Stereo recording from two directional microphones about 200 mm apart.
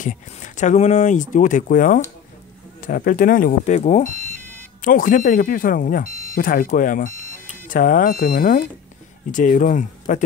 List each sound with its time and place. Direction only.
0.0 s speech: 40° left (ahead or behind)